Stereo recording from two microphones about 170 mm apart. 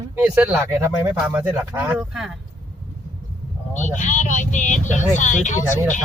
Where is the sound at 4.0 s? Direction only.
45° left (ahead or behind).